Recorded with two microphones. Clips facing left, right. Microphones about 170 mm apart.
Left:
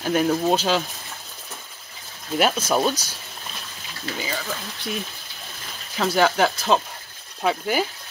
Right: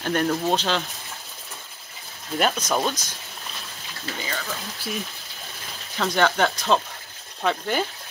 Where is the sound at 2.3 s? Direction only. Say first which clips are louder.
Left 3 dB; 5° left (ahead or behind).